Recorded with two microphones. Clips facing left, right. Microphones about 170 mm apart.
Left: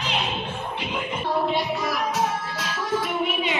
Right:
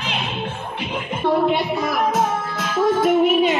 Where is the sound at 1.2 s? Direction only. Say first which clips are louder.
Right 7 dB; 55° right (ahead or behind).